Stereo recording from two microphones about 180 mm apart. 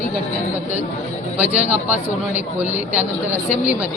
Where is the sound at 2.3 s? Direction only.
10° right (ahead or behind).